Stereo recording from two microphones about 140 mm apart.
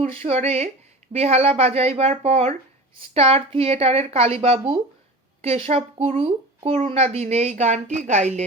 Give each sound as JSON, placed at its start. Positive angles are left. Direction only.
{"t": 0.0, "sound": "speech", "side_deg": -50}